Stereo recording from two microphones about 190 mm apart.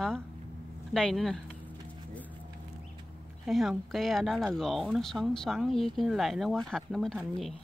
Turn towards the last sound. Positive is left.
turn(degrees=5)  # may be behind; listen again after turning